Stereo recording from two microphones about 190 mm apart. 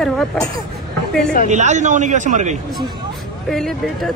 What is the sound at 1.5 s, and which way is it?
A man's voice, 40° right (ahead or behind).